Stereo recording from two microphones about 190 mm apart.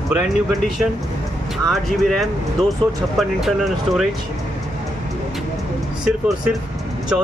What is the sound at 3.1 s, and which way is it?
Speech, centre (ahead or behind).